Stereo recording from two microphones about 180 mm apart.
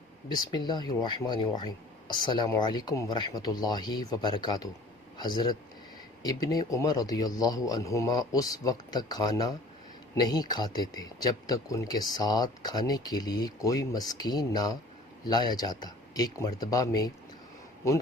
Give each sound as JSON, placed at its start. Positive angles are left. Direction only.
{"t": 0.3, "sound": "a man's voice", "side_deg": 20}